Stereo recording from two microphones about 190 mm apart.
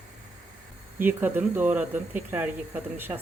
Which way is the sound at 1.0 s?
10° right (ahead or behind).